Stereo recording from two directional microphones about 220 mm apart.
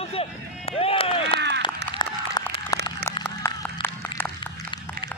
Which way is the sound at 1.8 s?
50° right (ahead or behind).